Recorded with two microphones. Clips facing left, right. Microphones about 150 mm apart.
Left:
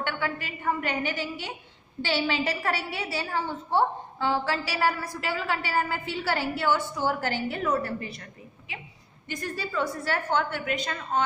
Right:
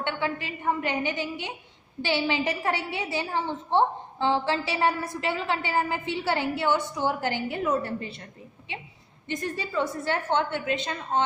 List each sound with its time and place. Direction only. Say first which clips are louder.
0.0 s a woman's voice: right 2 dB; 20° right (ahead or behind)